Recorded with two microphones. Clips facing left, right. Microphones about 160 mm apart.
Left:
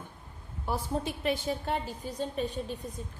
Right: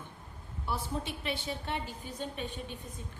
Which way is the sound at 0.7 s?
40° left (ahead or behind).